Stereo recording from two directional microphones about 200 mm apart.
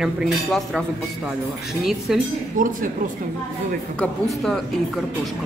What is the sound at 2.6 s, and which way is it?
Speech, 40° right (ahead or behind).